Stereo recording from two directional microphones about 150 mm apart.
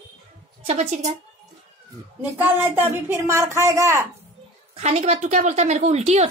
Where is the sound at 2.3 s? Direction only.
15° right (ahead or behind).